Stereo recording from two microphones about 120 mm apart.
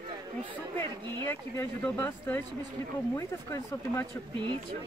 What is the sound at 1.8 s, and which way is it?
Speech, 15° left (ahead or behind).